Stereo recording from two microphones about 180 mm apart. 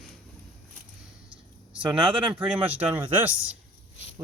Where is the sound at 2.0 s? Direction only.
25° right (ahead or behind).